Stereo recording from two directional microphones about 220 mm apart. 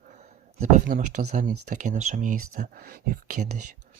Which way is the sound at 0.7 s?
35° right (ahead or behind).